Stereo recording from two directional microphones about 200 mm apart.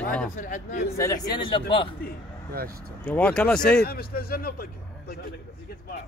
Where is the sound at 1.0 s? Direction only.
20° left (ahead or behind).